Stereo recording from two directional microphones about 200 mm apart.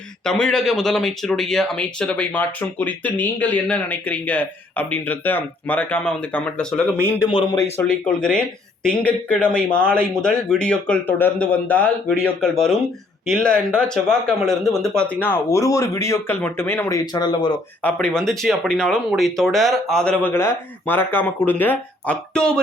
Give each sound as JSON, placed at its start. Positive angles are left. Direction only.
{"t": 0.3, "sound": "a man's voice", "side_deg": 5}
{"t": 7.3, "sound": "a man's voice", "side_deg": 25}
{"t": 7.8, "sound": "a man's voice", "side_deg": 5}
{"t": 17.8, "sound": "speech", "side_deg": 5}